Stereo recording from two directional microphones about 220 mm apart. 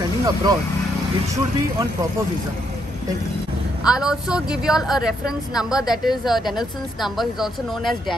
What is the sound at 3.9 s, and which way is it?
Speech, 5° right (ahead or behind).